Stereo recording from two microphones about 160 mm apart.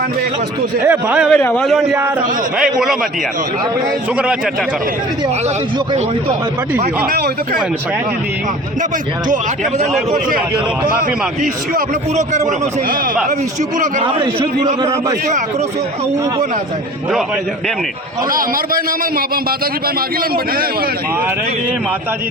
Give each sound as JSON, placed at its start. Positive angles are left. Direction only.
{"t": 0.9, "sound": "a man's voice", "side_deg": -10}
{"t": 1.3, "sound": "a man's voice", "side_deg": 10}
{"t": 2.6, "sound": "a man's voice", "side_deg": -5}
{"t": 6.7, "sound": "a man's voice", "side_deg": -65}
{"t": 9.3, "sound": "a man's voice", "side_deg": -50}
{"t": 14.2, "sound": "a man's voice", "side_deg": -30}
{"t": 18.3, "sound": "a man's voice", "side_deg": -60}